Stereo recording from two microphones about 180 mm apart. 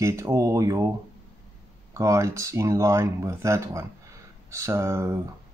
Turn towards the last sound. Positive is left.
turn(degrees=-15)  # may be behind; listen again after turning